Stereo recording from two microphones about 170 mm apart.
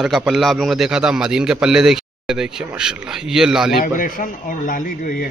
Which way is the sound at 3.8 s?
55° left (ahead or behind).